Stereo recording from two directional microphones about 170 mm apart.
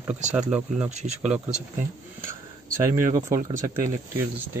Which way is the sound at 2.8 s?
15° right (ahead or behind).